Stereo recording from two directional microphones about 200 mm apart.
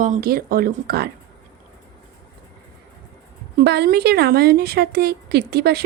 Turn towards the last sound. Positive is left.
turn(degrees=-55)  # may be behind; listen again after turning